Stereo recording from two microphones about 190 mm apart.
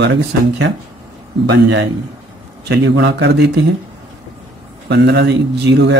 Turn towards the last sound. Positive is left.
turn(degrees=-65)  # may be behind; listen again after turning